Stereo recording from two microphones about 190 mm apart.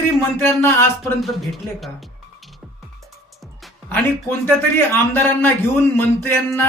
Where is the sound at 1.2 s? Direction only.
Centre (ahead or behind).